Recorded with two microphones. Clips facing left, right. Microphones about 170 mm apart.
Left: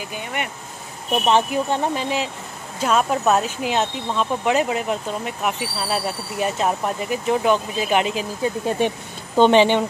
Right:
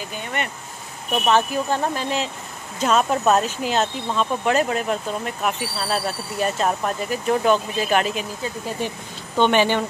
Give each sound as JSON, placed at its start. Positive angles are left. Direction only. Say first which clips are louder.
{"t": 0.1, "sound": "speech", "louder": "right 1 dB", "side_deg": 10}
{"t": 1.2, "sound": "speech", "louder": "left 1 dB", "side_deg": 20}
{"t": 2.8, "sound": "speech", "louder": "even", "side_deg": 10}
{"t": 8.6, "sound": "speech", "louder": "left 7 dB", "side_deg": 65}
{"t": 9.4, "sound": "speech", "louder": "left 4 dB", "side_deg": 25}